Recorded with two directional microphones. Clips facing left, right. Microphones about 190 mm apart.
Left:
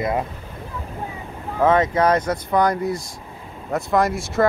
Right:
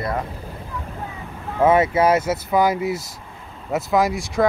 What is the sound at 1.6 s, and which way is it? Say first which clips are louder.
Speech: right 1 dB; 10° right (ahead or behind).